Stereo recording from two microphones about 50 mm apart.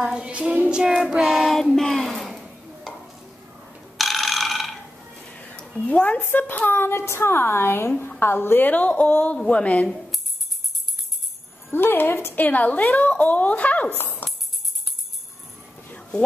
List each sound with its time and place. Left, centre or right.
0.0 s child singing: centre
1.8 s a sound: centre
4.0 s ratchet: centre
5.3 s a woman's voice: left
11.7 s a woman's voice: left
12.4 s a woman's voice: left
14.2 s tambourine: left